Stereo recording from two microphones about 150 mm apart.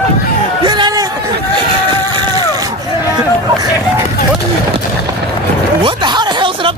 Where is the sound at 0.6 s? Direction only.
30° right (ahead or behind).